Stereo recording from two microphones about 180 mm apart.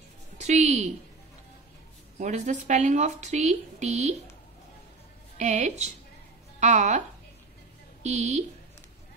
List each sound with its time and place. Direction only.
0.4 s a woman's voice: 40° right (ahead or behind)
2.1 s speech: 40° right (ahead or behind)
5.4 s speech: 40° right (ahead or behind)
8.0 s speech: 40° right (ahead or behind)